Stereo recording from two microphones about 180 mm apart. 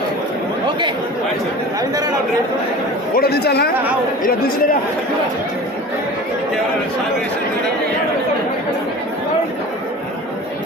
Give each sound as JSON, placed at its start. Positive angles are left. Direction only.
{"t": 3.2, "sound": "speech", "side_deg": 60}